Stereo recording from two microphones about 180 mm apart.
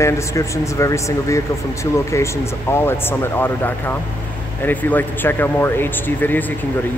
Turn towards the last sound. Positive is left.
turn(degrees=10)  # may be behind; listen again after turning